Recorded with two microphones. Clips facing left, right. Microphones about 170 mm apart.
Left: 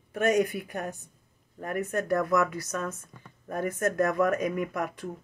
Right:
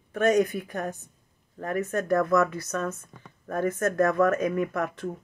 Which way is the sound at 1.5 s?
15° left (ahead or behind).